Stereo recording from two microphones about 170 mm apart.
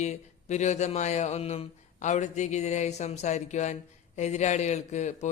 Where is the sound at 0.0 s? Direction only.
45° left (ahead or behind).